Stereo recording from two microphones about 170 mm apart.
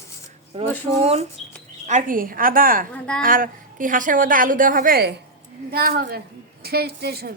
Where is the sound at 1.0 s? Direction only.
40° right (ahead or behind).